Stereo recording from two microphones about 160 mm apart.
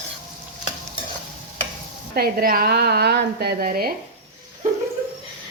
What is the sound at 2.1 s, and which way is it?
A woman's voice, 70° right (ahead or behind).